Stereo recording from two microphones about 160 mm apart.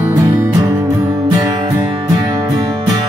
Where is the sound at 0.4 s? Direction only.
20° right (ahead or behind).